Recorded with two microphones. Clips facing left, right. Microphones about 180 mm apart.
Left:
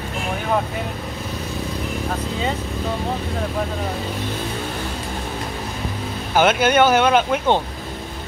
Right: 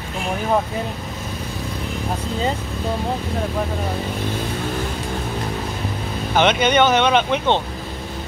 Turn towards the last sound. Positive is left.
turn(degrees=5)  # may be behind; listen again after turning